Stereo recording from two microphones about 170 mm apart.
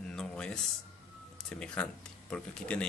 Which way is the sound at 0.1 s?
5° left (ahead or behind).